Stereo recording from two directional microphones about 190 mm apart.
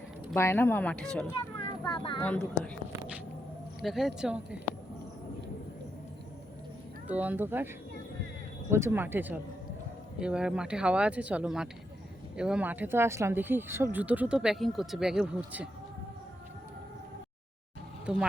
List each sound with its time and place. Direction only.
0.3 s a woman's voice: 10° left (ahead or behind)
1.3 s children playing: 25° left (ahead or behind)
2.2 s a woman's voice: 10° left (ahead or behind)
3.8 s speech: centre (ahead or behind)
7.1 s speech: 10° right (ahead or behind)
8.7 s speech: 10° right (ahead or behind)
18.0 s speech: 5° right (ahead or behind)